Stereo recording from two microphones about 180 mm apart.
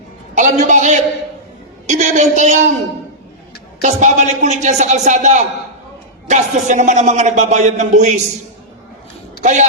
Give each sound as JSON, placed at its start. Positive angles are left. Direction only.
{"t": 0.3, "sound": "a man's voice", "side_deg": -40}
{"t": 3.8, "sound": "speech", "side_deg": -40}
{"t": 9.4, "sound": "speech", "side_deg": -40}